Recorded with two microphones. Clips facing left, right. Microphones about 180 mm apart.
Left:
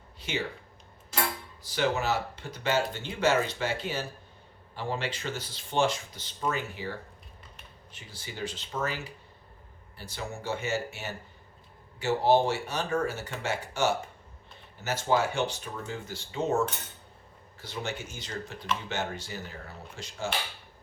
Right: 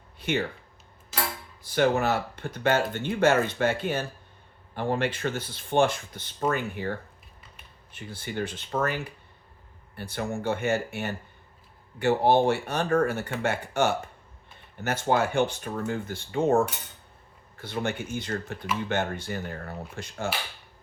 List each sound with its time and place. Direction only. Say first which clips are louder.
0.2 s speech: right 6 dB; 55° right (ahead or behind)
1.6 s speech: right 5 dB; 55° right (ahead or behind)